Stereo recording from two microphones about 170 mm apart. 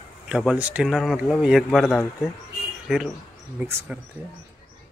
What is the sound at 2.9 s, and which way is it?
Speech, centre (ahead or behind).